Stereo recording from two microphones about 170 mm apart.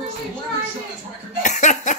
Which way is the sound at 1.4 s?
45° left (ahead or behind).